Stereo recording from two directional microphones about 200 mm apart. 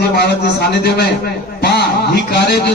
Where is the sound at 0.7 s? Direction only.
50° left (ahead or behind).